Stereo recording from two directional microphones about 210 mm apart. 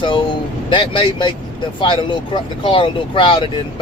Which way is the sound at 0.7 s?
25° left (ahead or behind).